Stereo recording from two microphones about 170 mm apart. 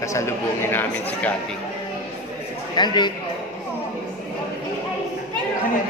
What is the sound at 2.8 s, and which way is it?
Speech, 25° left (ahead or behind).